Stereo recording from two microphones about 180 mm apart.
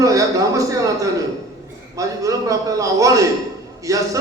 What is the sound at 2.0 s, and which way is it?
A man's voice, 20° right (ahead or behind).